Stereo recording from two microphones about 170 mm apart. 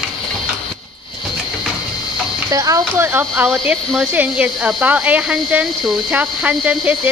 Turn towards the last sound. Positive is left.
turn(degrees=-10)  # may be behind; listen again after turning